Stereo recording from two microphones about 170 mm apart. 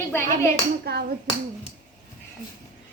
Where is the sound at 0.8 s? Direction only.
70° right (ahead or behind).